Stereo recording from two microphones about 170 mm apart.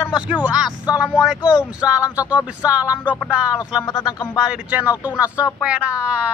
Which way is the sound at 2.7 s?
10° right (ahead or behind).